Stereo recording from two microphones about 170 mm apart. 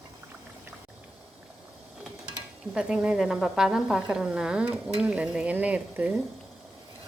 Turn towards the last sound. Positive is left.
turn(degrees=-10)  # may be behind; listen again after turning